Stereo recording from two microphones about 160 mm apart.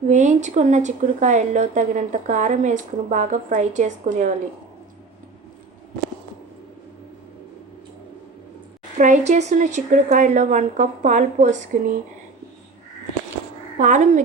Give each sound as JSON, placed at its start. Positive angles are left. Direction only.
{"t": 0.1, "sound": "a woman's voice", "side_deg": -50}
{"t": 9.0, "sound": "a woman's voice", "side_deg": -50}
{"t": 13.7, "sound": "a woman's voice", "side_deg": -50}